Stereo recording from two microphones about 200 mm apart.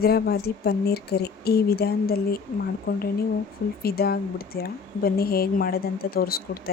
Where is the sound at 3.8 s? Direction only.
50° left (ahead or behind).